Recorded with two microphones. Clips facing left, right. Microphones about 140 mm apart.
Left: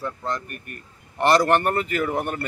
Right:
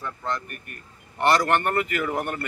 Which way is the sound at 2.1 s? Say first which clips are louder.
Left 2 dB; centre (ahead or behind).